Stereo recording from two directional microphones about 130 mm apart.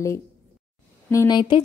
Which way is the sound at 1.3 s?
35° left (ahead or behind).